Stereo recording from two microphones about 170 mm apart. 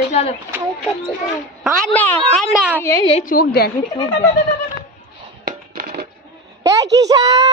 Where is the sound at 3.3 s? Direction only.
65° left (ahead or behind).